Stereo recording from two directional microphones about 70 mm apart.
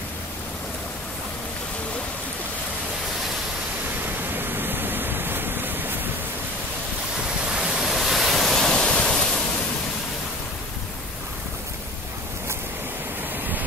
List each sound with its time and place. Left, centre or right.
4.0 s waterfall: right
7.5 s waves: centre